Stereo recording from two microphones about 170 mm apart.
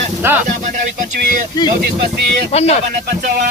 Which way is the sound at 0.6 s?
50° right (ahead or behind).